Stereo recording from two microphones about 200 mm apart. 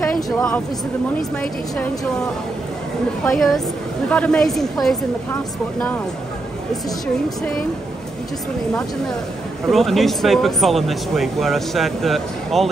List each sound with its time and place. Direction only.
0.0 s a woman's voice: 5° left (ahead or behind)
3.3 s speech: centre (ahead or behind)
9.7 s speech: centre (ahead or behind)